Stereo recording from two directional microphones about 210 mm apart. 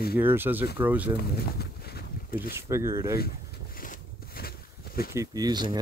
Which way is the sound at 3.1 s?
45° left (ahead or behind).